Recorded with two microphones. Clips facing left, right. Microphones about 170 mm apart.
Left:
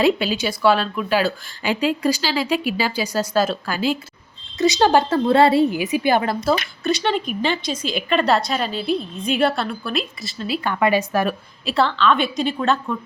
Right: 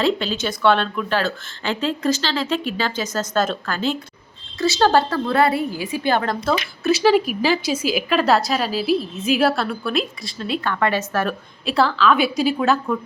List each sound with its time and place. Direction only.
0.0 s speech: 10° left (ahead or behind)
5.0 s speech: 25° left (ahead or behind); by 6.6 s 10° left (ahead or behind)
6.8 s a woman's voice: 5° right (ahead or behind); by 11.3 s 10° left (ahead or behind)
11.6 s a woman's voice: centre (ahead or behind)